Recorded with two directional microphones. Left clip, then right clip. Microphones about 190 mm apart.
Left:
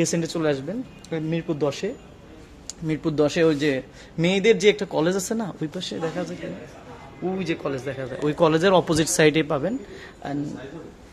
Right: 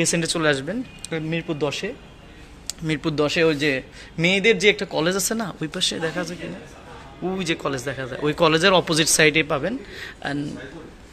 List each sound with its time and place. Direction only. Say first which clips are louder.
0.2 s speech: right 3 dB; centre (ahead or behind)
1.3 s speech: even; 20° left (ahead or behind)
2.9 s speech: even; 10° left (ahead or behind)